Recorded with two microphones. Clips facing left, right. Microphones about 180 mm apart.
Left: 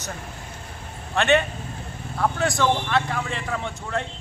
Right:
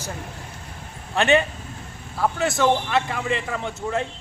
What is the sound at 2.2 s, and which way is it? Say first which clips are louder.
A man's voice: right 1 dB; 5° right (ahead or behind).